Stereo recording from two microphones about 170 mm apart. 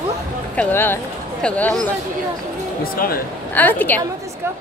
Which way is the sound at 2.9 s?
60° left (ahead or behind).